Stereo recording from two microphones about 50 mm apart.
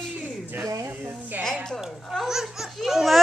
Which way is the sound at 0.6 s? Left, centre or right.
Right.